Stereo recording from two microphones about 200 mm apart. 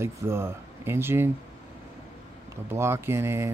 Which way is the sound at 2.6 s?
10° right (ahead or behind).